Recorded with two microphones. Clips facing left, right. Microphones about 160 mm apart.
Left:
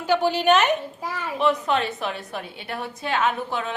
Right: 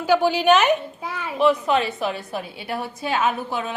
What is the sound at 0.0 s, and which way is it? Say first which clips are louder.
A child's voice: right 2 dB; 5° right (ahead or behind).